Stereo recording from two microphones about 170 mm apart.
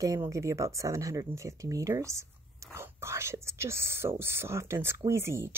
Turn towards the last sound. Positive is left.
turn(degrees=-15)  # may be behind; listen again after turning